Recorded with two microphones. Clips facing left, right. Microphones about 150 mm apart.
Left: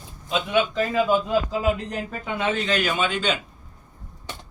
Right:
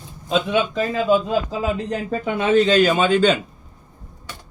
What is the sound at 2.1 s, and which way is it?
Speech, 30° right (ahead or behind).